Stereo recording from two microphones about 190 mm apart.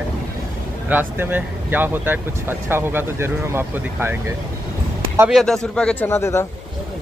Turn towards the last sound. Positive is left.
turn(degrees=15)  # may be behind; listen again after turning